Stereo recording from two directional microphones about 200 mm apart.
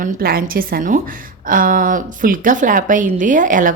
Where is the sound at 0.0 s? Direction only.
50° right (ahead or behind).